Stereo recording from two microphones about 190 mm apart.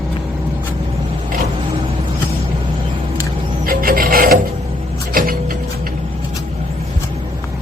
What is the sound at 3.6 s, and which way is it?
Filing, 50° right (ahead or behind).